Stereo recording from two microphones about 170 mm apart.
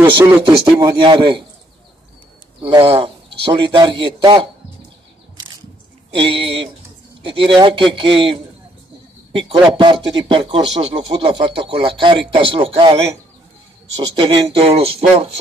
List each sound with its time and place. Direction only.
0.2 s a man's voice: 30° right (ahead or behind)
2.6 s a man's voice: 35° right (ahead or behind)
6.1 s a man's voice: 30° right (ahead or behind)
14.1 s a man's voice: 30° right (ahead or behind)